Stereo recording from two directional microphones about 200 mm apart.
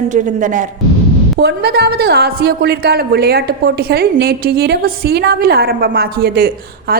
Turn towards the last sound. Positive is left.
turn(degrees=-50)  # may be behind; listen again after turning